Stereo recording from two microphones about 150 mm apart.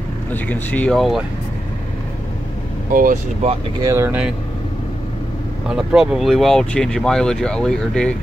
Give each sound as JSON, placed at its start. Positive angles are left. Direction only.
{"t": 0.3, "sound": "speech", "side_deg": 10}
{"t": 2.9, "sound": "speech", "side_deg": -70}
{"t": 3.8, "sound": "speech", "side_deg": -20}
{"t": 5.7, "sound": "speech", "side_deg": -5}